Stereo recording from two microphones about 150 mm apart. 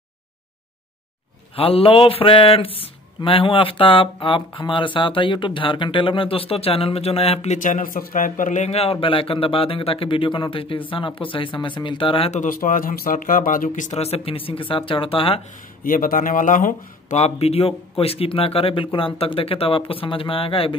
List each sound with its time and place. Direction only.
1.5 s speech: 40° left (ahead or behind)
7.5 s speech: 60° left (ahead or behind); by 12.4 s 40° left (ahead or behind)
12.4 s speech: 65° left (ahead or behind); by 15.4 s 40° left (ahead or behind)
15.8 s speech: 65° left (ahead or behind); by 20.7 s 40° left (ahead or behind)